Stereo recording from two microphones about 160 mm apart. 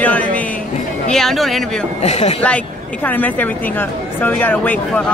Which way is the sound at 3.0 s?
10° left (ahead or behind).